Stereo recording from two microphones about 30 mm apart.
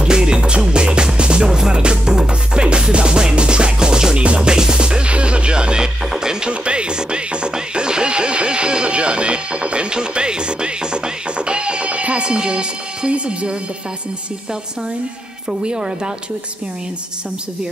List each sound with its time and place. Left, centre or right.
0.0 s music: right
4.2 s music: right
4.5 s music: right
6.5 s music: right
12.2 s music: right
15.6 s speech: right